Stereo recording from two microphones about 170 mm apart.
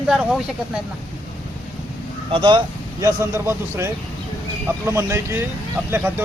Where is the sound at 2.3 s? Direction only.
30° right (ahead or behind).